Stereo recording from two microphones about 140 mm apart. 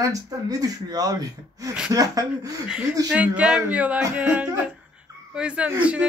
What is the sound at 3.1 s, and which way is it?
Speech, 5° right (ahead or behind).